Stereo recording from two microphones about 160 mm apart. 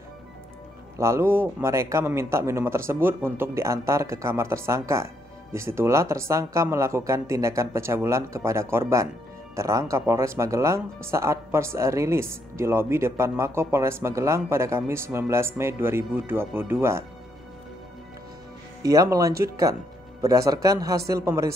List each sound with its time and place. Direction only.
0.9 s a man's voice: 15° right (ahead or behind)
18.8 s speech: 20° right (ahead or behind)